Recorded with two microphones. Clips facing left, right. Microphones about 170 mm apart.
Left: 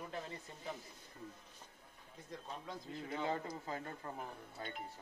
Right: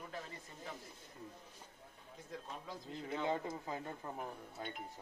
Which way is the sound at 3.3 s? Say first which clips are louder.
Right 2 dB; 20° right (ahead or behind).